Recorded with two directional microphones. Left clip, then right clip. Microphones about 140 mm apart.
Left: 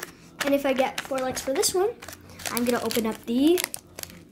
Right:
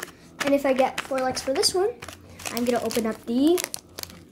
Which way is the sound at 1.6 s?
20° left (ahead or behind).